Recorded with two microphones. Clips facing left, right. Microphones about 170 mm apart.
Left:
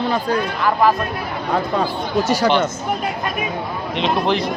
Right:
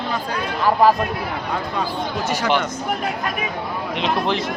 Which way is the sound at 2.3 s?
35° left (ahead or behind).